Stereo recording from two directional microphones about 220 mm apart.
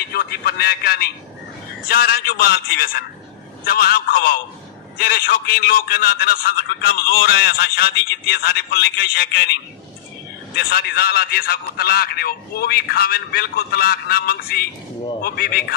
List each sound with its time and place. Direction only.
0.1 s a man's voice: 45° left (ahead or behind)